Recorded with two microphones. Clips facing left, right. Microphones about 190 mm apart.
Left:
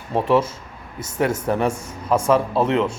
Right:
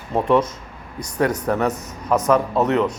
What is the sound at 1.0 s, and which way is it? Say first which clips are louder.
Speech: right 1 dB; 25° left (ahead or behind).